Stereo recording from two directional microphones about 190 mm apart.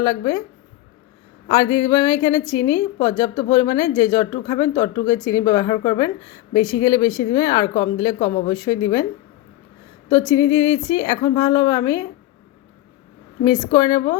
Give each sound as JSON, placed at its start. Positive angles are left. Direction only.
{"t": 0.0, "sound": "speech", "side_deg": 15}
{"t": 1.5, "sound": "a woman's voice", "side_deg": 20}
{"t": 10.1, "sound": "a woman's voice", "side_deg": 20}
{"t": 13.4, "sound": "a woman's voice", "side_deg": 20}